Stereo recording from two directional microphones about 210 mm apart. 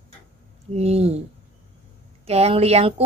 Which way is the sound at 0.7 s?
30° right (ahead or behind).